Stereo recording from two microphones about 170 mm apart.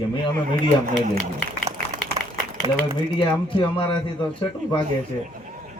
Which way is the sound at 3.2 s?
30° left (ahead or behind).